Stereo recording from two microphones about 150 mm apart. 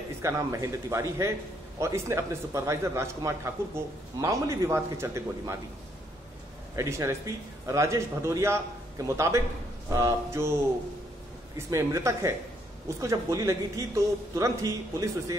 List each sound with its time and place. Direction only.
0.2 s a man's voice: 20° right (ahead or behind)
6.7 s a man's voice: 20° right (ahead or behind)
11.5 s a man's voice: 20° right (ahead or behind)